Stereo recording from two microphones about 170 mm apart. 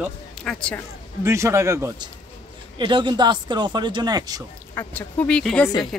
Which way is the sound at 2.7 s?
30° right (ahead or behind).